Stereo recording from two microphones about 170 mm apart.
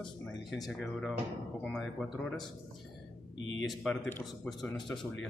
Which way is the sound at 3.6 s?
Centre (ahead or behind).